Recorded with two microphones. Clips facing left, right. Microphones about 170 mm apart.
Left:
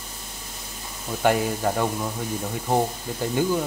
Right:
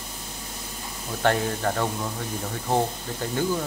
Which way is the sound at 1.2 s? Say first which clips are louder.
Left 2 dB; 10° left (ahead or behind).